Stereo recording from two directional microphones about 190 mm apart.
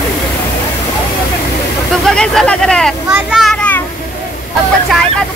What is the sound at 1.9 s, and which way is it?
Hubbub, 5° left (ahead or behind).